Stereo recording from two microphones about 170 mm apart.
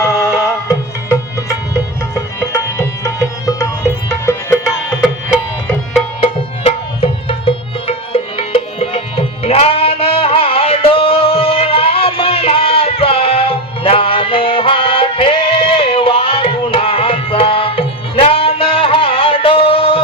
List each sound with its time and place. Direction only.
0.0 s music: 15° left (ahead or behind)
6.1 s tabla: 35° left (ahead or behind)